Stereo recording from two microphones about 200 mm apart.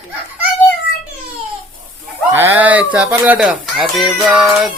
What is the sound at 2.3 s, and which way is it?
Speech, 10° right (ahead or behind).